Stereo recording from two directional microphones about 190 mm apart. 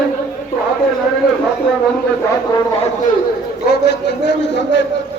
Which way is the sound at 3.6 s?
65° left (ahead or behind).